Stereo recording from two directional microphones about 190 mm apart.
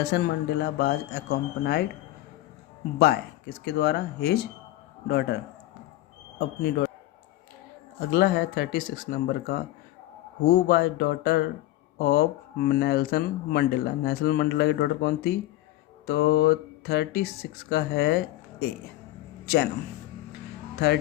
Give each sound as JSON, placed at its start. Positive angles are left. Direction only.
{"t": 0.0, "sound": "speech", "side_deg": 60}
{"t": 3.6, "sound": "speech", "side_deg": 60}
{"t": 6.4, "sound": "a man's voice", "side_deg": 50}
{"t": 8.1, "sound": "speech", "side_deg": 55}
{"t": 20.7, "sound": "speech", "side_deg": 60}